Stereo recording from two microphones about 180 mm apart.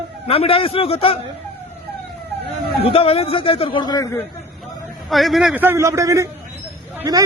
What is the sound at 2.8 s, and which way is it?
A man's voice, 30° left (ahead or behind).